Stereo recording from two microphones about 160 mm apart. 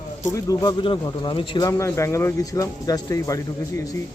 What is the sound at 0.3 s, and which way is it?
Speech, 20° left (ahead or behind).